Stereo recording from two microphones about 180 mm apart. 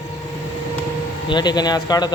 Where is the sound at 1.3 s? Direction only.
25° left (ahead or behind).